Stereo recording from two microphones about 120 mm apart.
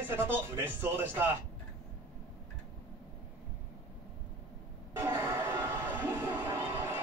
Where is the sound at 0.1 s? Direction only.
20° right (ahead or behind).